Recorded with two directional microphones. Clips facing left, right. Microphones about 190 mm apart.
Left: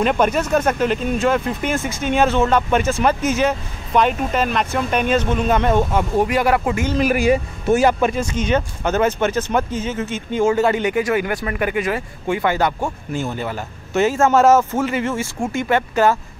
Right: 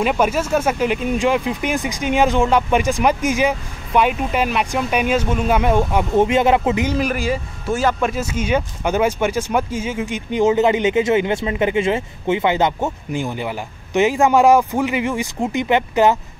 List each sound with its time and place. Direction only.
0.0 s speech: 5° right (ahead or behind)
6.1 s speech: 25° right (ahead or behind)
7.2 s speech: 15° left (ahead or behind)
8.0 s speech: 5° right (ahead or behind)